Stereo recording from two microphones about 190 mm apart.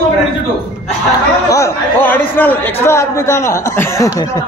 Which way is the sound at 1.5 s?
15° left (ahead or behind).